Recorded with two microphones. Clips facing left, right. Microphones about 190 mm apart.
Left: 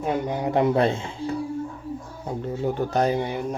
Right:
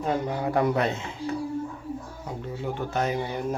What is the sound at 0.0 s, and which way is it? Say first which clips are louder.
Speech: left 2 dB; 15° left (ahead or behind).